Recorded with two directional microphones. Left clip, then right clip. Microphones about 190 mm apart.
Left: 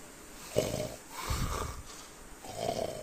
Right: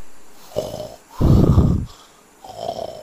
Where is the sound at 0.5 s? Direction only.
15° right (ahead or behind).